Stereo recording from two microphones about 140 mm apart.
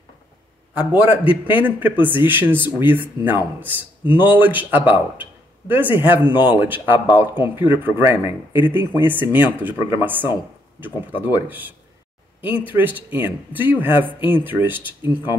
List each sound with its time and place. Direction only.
0.7 s speech: 10° right (ahead or behind)
3.2 s speech: 35° left (ahead or behind)
3.6 s speech: 15° right (ahead or behind)
6.2 s speech: 35° left (ahead or behind)
6.5 s speech: 15° right (ahead or behind)